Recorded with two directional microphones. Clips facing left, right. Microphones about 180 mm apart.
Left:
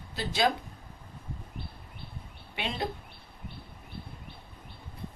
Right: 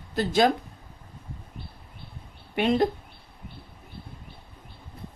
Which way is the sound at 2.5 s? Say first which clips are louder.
Right 12 dB; 50° right (ahead or behind).